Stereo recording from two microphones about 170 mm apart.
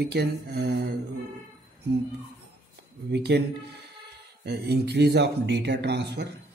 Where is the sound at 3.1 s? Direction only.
75° right (ahead or behind).